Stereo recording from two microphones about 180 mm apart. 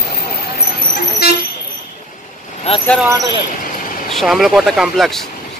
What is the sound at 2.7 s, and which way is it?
Speech, 35° left (ahead or behind).